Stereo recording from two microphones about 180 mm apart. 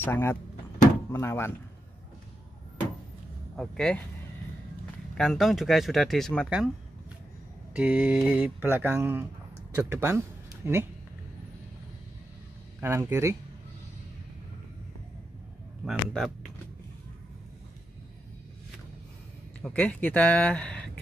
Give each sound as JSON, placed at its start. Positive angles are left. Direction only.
{"t": 0.0, "sound": "speech", "side_deg": 10}
{"t": 3.5, "sound": "speech", "side_deg": 5}
{"t": 5.1, "sound": "speech", "side_deg": 0}
{"t": 7.7, "sound": "mantra", "side_deg": -5}
{"t": 9.8, "sound": "speech", "side_deg": -15}
{"t": 12.8, "sound": "mantra", "side_deg": -15}
{"t": 15.8, "sound": "speech", "side_deg": 0}
{"t": 19.6, "sound": "speech", "side_deg": 5}